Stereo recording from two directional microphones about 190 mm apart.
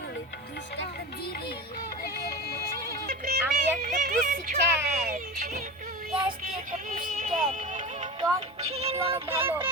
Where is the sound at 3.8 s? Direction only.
45° right (ahead or behind).